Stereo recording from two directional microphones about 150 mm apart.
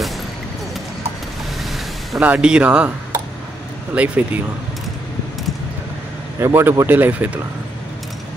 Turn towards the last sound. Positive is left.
turn(degrees=-10)  # may be behind; listen again after turning